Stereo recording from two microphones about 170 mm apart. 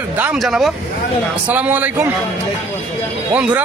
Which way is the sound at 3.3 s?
10° right (ahead or behind).